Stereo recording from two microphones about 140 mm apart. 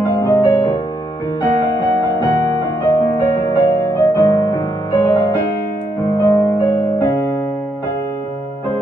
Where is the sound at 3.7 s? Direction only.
20° left (ahead or behind).